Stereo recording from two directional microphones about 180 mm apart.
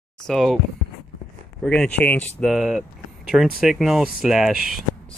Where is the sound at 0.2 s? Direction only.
Centre (ahead or behind).